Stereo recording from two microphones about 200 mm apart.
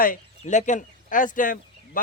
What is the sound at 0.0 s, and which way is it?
A man's voice, 40° left (ahead or behind).